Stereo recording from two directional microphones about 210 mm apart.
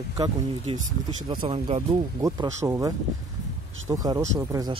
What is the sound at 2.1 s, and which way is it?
Speech, 15° right (ahead or behind).